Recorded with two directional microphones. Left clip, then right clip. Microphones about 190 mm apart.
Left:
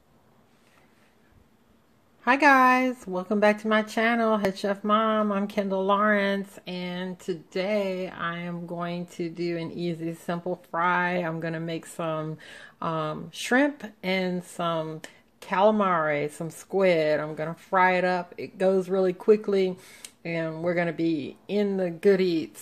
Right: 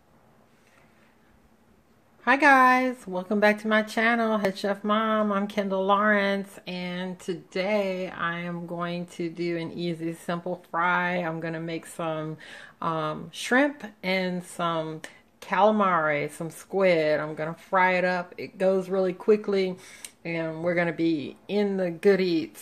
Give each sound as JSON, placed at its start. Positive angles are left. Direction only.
{"t": 2.2, "sound": "speech", "side_deg": 15}